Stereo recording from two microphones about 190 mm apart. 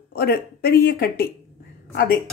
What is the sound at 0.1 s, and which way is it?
Speech, 55° left (ahead or behind).